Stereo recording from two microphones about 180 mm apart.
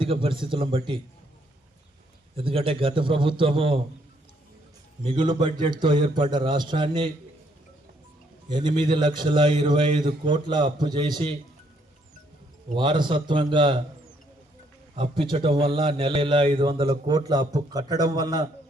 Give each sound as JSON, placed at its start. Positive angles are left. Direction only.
{"t": 0.0, "sound": "a man's voice", "side_deg": -30}
{"t": 2.3, "sound": "a man's voice", "side_deg": -30}
{"t": 5.0, "sound": "a man's voice", "side_deg": -25}
{"t": 8.4, "sound": "a man's voice", "side_deg": -25}
{"t": 12.7, "sound": "a man's voice", "side_deg": -25}
{"t": 14.9, "sound": "a man's voice", "side_deg": -30}